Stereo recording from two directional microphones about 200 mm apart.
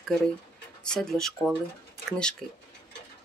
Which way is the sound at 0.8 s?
Centre (ahead or behind).